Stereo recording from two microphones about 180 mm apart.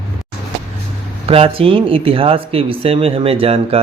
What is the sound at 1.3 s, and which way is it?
Speech, 30° right (ahead or behind).